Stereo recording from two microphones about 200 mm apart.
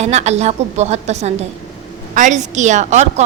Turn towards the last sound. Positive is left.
turn(degrees=-35)  # may be behind; listen again after turning